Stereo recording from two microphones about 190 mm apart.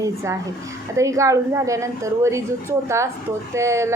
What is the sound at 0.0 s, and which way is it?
A woman's voice, 15° right (ahead or behind).